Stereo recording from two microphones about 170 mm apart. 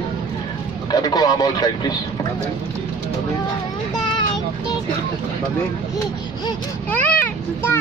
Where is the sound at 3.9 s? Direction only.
25° left (ahead or behind).